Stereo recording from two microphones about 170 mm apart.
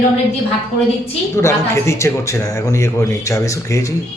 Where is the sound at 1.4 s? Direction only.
15° left (ahead or behind).